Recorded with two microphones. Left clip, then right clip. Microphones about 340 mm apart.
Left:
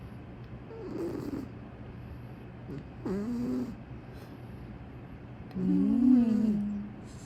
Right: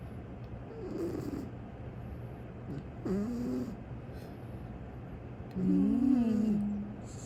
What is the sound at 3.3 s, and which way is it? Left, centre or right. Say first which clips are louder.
Cat: left 2 dB; centre.